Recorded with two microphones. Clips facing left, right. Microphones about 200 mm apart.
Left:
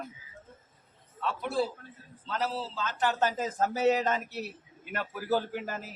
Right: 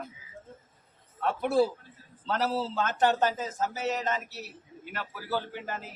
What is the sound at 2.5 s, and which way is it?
Speech, 50° right (ahead or behind).